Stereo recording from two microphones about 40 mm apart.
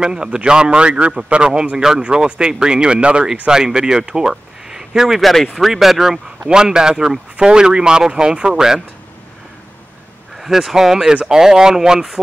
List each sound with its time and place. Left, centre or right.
0.0 s speech: right
5.2 s speech: centre
6.4 s speech: centre
10.3 s speech: centre